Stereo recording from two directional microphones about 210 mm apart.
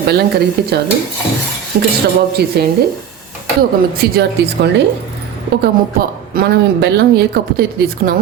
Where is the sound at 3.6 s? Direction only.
50° right (ahead or behind).